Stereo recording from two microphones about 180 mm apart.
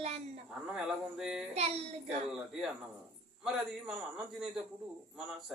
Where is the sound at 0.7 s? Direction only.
5° right (ahead or behind).